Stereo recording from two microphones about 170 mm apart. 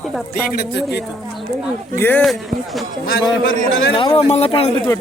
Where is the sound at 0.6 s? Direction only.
80° left.